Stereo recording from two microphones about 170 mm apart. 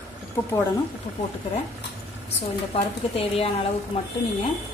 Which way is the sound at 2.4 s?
35° left (ahead or behind).